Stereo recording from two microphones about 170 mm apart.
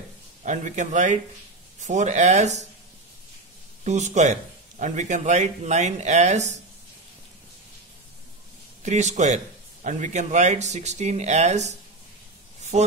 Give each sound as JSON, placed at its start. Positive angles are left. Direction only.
{"t": 0.4, "sound": "a man's voice", "side_deg": -45}
{"t": 3.8, "sound": "a man's voice", "side_deg": -45}
{"t": 8.8, "sound": "a man's voice", "side_deg": -45}
{"t": 12.7, "sound": "speech", "side_deg": -40}